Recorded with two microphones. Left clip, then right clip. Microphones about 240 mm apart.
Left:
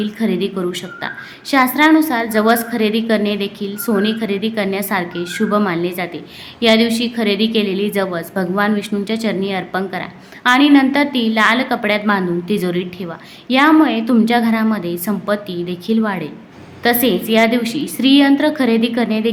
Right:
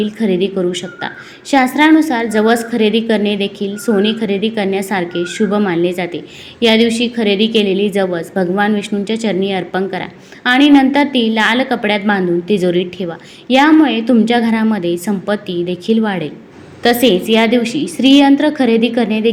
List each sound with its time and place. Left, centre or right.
0.0 s a woman's voice: centre